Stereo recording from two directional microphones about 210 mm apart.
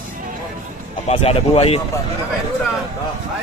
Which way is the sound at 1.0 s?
30° left (ahead or behind).